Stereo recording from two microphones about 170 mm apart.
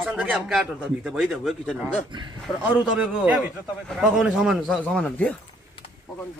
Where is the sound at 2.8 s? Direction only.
5° right (ahead or behind).